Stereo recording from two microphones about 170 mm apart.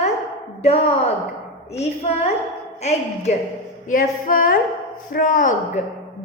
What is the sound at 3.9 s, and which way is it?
A woman's voice, 55° left (ahead or behind).